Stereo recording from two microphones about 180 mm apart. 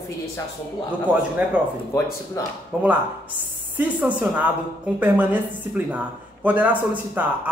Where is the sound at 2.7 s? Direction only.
5° right (ahead or behind).